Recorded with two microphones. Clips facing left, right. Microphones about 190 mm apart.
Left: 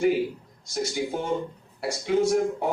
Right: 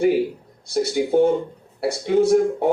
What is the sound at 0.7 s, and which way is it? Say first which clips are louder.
Speech: right 9 dB; 35° right (ahead or behind).